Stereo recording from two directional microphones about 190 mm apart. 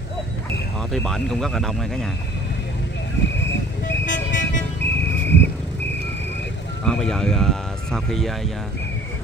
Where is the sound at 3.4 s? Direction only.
70° left (ahead or behind).